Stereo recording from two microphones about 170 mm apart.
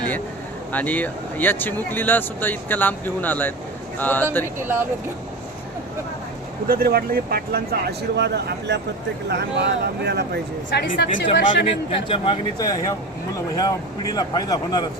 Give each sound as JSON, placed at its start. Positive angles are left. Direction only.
{"t": 0.7, "sound": "speech", "side_deg": 10}
{"t": 6.7, "sound": "speech", "side_deg": -60}
{"t": 10.8, "sound": "a woman's voice", "side_deg": 75}
{"t": 11.6, "sound": "speech", "side_deg": 35}